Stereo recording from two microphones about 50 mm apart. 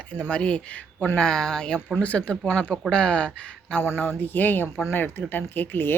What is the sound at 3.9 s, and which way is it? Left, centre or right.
Speech, left.